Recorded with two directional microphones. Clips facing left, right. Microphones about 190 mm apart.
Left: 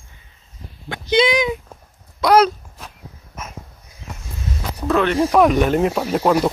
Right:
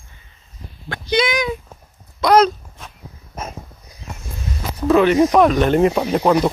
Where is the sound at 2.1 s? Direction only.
10° left (ahead or behind).